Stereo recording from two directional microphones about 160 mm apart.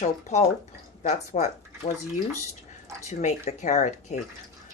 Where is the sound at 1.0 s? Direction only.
45° left (ahead or behind).